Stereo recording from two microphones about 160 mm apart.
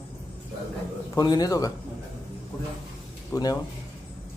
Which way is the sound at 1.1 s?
25° left (ahead or behind).